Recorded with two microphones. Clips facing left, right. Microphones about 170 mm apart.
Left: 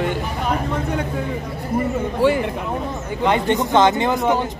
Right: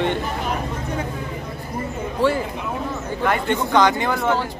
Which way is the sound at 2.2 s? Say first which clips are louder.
Left 2 dB; 10° left (ahead or behind).